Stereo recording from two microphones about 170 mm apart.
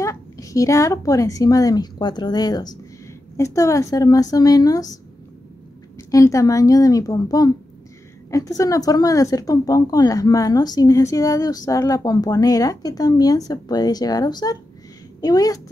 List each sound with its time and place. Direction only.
0.0 s a woman's voice: 20° left (ahead or behind)
6.1 s a woman's voice: 20° left (ahead or behind)